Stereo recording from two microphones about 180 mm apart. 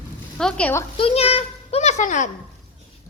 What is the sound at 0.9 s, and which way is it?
A child's voice, 30° left (ahead or behind).